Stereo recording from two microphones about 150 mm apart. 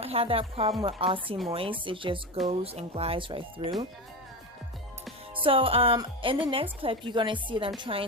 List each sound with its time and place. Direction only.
0.0 s a woman's voice: 40° right (ahead or behind)
5.4 s a woman's voice: 35° right (ahead or behind)